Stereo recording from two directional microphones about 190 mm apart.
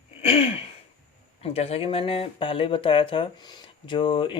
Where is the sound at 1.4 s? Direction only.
30° left (ahead or behind).